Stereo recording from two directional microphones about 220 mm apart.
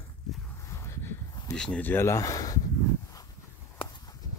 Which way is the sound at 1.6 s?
5° left (ahead or behind).